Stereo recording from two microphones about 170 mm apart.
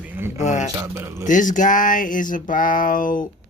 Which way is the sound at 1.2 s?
50° left (ahead or behind).